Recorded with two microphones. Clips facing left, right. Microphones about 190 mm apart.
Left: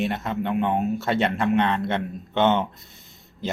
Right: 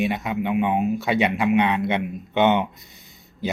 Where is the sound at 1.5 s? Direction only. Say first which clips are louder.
Right 2 dB; 15° right (ahead or behind).